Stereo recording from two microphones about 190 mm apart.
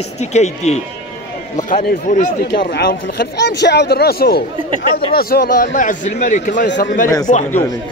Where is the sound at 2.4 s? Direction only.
60° left (ahead or behind).